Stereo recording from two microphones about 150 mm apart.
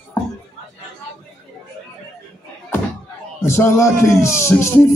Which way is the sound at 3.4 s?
15° left (ahead or behind).